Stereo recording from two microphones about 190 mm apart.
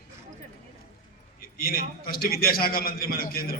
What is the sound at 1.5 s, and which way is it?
A man's voice, 50° left (ahead or behind).